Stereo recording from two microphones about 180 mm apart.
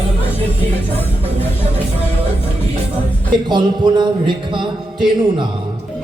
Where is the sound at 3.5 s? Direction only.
25° right (ahead or behind).